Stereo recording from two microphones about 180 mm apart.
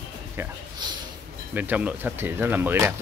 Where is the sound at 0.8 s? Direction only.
25° right (ahead or behind).